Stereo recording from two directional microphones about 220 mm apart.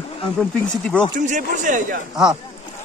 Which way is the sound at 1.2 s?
35° right (ahead or behind).